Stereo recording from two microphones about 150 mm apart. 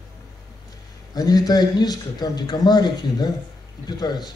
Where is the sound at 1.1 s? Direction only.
25° left (ahead or behind).